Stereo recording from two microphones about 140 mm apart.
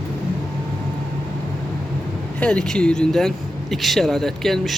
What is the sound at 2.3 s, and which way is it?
Speech, 5° left (ahead or behind).